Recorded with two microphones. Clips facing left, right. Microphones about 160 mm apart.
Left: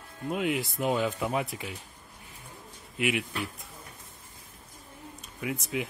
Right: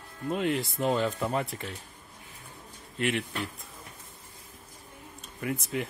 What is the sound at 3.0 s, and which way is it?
Speech, 5° left (ahead or behind).